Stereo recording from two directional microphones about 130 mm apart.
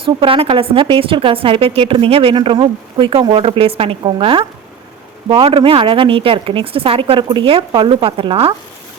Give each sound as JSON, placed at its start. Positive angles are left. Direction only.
{"t": 0.0, "sound": "a woman's voice", "side_deg": -45}